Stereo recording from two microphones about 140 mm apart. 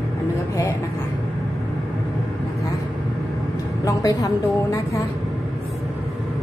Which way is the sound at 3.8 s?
25° left (ahead or behind).